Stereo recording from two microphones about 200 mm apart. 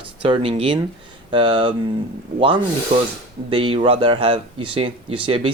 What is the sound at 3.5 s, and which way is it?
Speech, 25° right (ahead or behind).